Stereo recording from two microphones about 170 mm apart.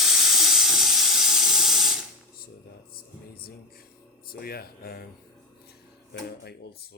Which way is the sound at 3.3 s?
60° left (ahead or behind).